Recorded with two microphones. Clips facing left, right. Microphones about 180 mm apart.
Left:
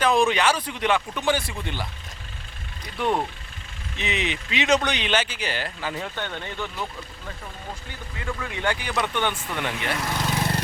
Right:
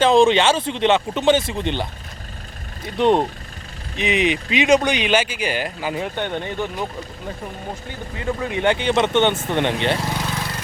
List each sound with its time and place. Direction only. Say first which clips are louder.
0.0 s speech: right 6 dB; 25° right (ahead or behind)
8.1 s speech: right 8 dB; 30° right (ahead or behind)